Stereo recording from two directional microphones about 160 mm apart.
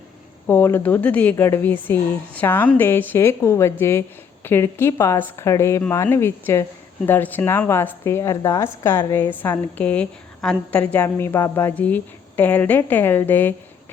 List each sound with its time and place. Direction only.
0.4 s a woman's voice: 15° left (ahead or behind)